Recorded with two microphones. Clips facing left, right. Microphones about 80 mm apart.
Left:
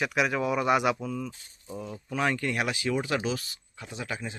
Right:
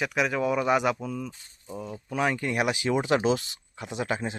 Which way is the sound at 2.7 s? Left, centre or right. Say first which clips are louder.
Right 4 dB; right.